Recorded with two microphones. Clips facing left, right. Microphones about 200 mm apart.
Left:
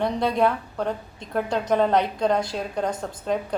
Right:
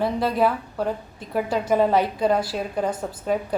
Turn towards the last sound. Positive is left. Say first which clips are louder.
# right 1 dB
turn(degrees=-5)  # may be behind; listen again after turning